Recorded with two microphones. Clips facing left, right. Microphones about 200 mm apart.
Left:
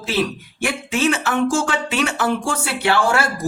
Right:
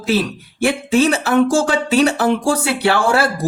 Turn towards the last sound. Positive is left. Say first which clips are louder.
# right 3 dB
turn(degrees=-35)  # may be behind; listen again after turning